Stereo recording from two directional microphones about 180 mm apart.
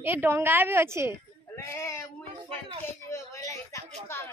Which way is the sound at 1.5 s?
15° left (ahead or behind).